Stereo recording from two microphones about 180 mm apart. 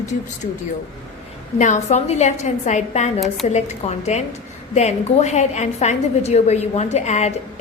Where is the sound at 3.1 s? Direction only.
Centre (ahead or behind).